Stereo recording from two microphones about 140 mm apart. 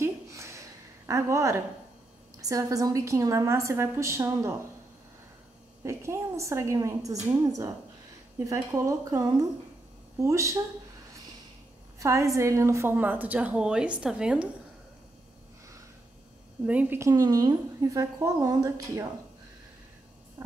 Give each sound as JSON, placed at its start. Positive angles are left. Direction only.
{"t": 0.0, "sound": "a sound", "side_deg": -20}
{"t": 2.4, "sound": "a woman's voice", "side_deg": -25}
{"t": 5.9, "sound": "a woman's voice", "side_deg": -20}
{"t": 12.0, "sound": "a woman's voice", "side_deg": -20}
{"t": 16.6, "sound": "a woman's voice", "side_deg": -10}
{"t": 17.0, "sound": "a woman's voice", "side_deg": -25}
{"t": 20.4, "sound": "frog", "side_deg": -15}